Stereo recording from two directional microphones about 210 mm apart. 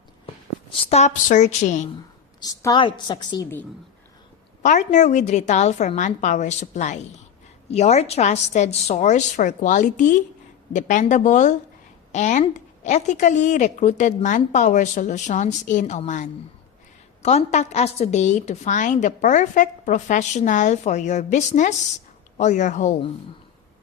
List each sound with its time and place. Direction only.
0.9 s a woman's voice: 35° left (ahead or behind)
2.4 s a woman's voice: 15° left (ahead or behind)
4.6 s a woman's voice: 35° left (ahead or behind)